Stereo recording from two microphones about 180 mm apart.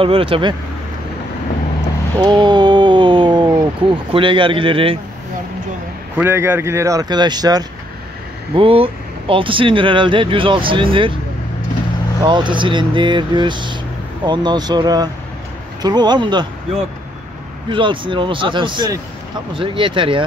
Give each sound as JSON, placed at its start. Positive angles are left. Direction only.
{"t": 0.0, "sound": "speech", "side_deg": -30}
{"t": 2.1, "sound": "a sound", "side_deg": -25}
{"t": 4.1, "sound": "speech", "side_deg": -30}
{"t": 6.1, "sound": "speech", "side_deg": -10}
{"t": 12.2, "sound": "speech", "side_deg": -25}
{"t": 17.6, "sound": "speech", "side_deg": -25}